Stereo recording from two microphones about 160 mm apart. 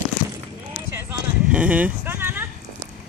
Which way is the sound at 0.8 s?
10° right (ahead or behind).